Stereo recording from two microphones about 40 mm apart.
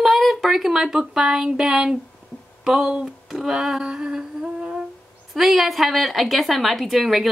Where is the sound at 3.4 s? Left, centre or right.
Centre.